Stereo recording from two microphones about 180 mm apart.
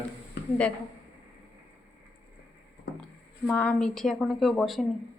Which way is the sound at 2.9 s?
65° left (ahead or behind).